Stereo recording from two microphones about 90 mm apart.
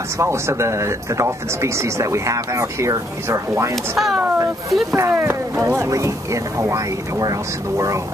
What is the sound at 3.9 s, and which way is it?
Speech, centre (ahead or behind).